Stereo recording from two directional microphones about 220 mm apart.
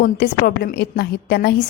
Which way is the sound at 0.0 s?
45° left (ahead or behind).